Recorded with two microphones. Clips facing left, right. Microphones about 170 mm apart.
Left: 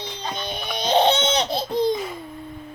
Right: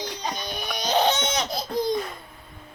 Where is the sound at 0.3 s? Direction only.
25° left (ahead or behind).